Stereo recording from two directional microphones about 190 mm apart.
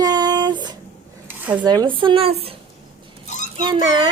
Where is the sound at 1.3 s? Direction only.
10° right (ahead or behind).